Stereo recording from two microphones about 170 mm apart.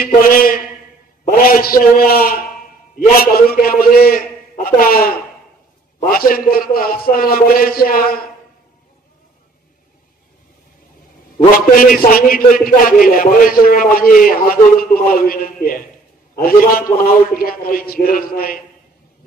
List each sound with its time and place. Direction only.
0.0 s a man's voice: 60° left (ahead or behind)
11.3 s a man's voice: 55° left (ahead or behind)